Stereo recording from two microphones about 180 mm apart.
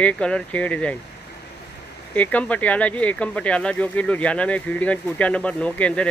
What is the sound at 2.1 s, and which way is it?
Speech, 10° left (ahead or behind).